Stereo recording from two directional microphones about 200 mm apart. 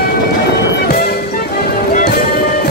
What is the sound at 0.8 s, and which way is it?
Music, 50° left (ahead or behind).